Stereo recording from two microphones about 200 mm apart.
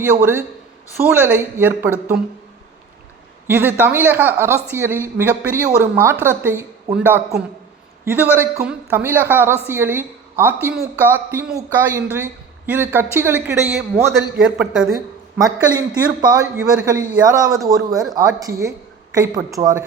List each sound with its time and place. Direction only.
0.0 s a woman's voice: 10° right (ahead or behind)
3.4 s a woman's voice: 10° right (ahead or behind)
15.4 s a man's voice: 20° right (ahead or behind)